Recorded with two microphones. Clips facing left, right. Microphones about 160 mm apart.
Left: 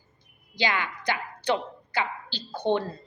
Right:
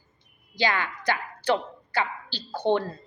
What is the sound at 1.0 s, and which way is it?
A woman's voice, 20° left (ahead or behind).